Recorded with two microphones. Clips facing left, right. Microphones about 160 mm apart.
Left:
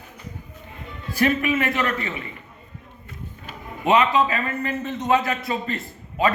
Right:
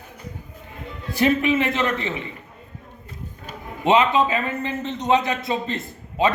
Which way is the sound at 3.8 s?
25° right (ahead or behind).